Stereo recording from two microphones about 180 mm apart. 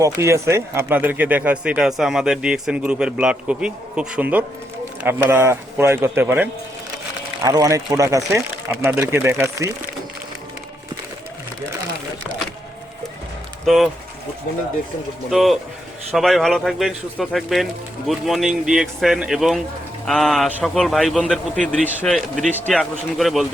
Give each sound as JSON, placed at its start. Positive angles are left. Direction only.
{"t": 0.0, "sound": "speech", "side_deg": -15}
{"t": 13.7, "sound": "speech", "side_deg": 0}
{"t": 15.3, "sound": "speech", "side_deg": 0}